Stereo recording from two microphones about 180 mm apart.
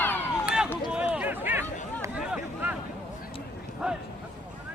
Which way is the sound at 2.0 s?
5° right (ahead or behind).